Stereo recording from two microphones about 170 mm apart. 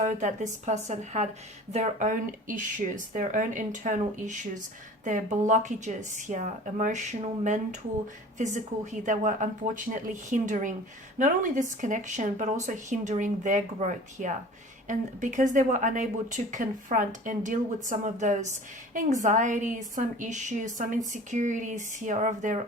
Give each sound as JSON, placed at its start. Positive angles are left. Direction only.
{"t": 0.0, "sound": "speech", "side_deg": -45}